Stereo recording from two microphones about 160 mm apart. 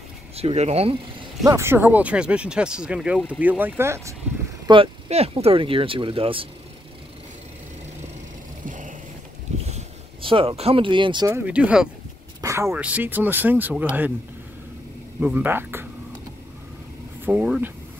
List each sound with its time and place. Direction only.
0.4 s speech: 40° right (ahead or behind)
1.4 s speech: 20° right (ahead or behind)
4.6 s speech: 35° right (ahead or behind)
8.6 s vehicle: 55° right (ahead or behind)
9.7 s vehicle: 40° right (ahead or behind)
11.2 s speech: 10° right (ahead or behind)
12.4 s speech: 20° right (ahead or behind)
15.1 s speech: 10° right (ahead or behind)
17.2 s speech: 10° right (ahead or behind)